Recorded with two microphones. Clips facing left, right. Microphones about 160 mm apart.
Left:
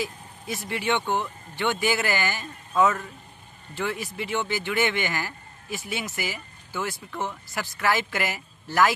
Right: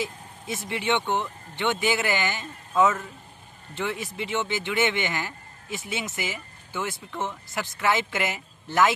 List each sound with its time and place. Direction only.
0.0 s speech: 20° right (ahead or behind)
3.7 s speech: 20° right (ahead or behind)